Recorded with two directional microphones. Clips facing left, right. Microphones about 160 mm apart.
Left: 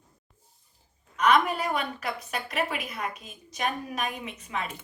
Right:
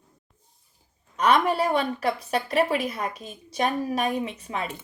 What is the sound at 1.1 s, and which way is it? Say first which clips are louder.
Speech: right 2 dB; 35° right (ahead or behind).